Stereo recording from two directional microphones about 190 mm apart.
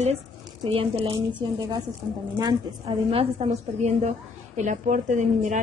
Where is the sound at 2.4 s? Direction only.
25° right (ahead or behind); by 5.5 s 40° right (ahead or behind).